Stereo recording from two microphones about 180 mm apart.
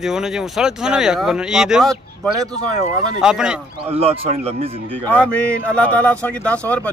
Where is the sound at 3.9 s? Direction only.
35° right (ahead or behind).